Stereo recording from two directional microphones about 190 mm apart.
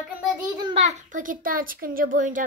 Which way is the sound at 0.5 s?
25° right (ahead or behind).